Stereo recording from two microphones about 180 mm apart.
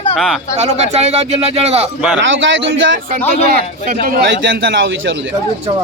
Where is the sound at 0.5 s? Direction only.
35° right (ahead or behind).